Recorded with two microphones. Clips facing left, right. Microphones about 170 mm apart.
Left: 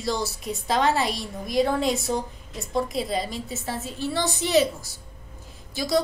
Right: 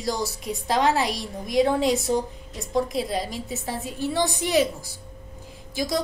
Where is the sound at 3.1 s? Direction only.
15° right (ahead or behind).